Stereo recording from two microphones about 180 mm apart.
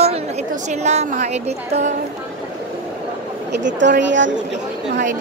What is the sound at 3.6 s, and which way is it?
Speech, 80° right.